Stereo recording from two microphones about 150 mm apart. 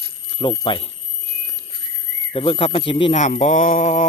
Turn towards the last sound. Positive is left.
turn(degrees=55)  # may be behind; listen again after turning